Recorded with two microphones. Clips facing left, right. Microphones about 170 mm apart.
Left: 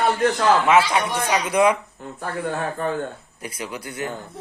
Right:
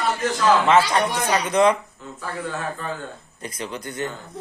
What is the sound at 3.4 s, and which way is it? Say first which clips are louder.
Speech: right 1 dB; 10° left (ahead or behind).